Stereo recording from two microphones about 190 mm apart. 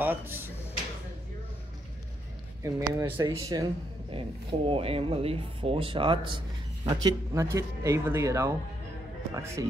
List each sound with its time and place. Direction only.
0.0 s speech: 10° right (ahead or behind)
2.6 s speech: 20° right (ahead or behind)